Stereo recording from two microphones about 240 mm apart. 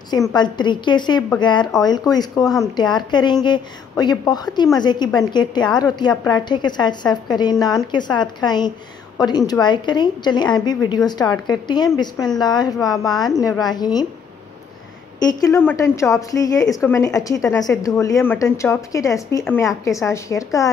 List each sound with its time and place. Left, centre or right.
0.1 s a woman's voice: centre
15.1 s a woman's voice: centre